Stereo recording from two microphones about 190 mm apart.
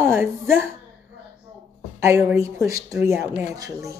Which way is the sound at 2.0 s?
15° right (ahead or behind).